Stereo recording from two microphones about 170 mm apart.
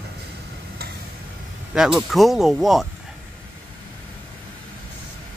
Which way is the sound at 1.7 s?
5° right (ahead or behind).